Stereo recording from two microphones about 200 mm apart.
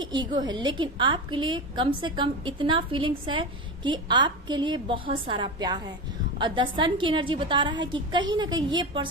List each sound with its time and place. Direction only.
0.0 s a woman's voice: 20° right (ahead or behind)